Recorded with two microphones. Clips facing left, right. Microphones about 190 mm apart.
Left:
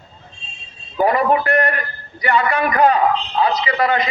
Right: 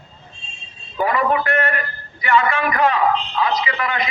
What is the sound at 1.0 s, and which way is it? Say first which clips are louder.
A man's voice: left 3 dB; 40° left (ahead or behind).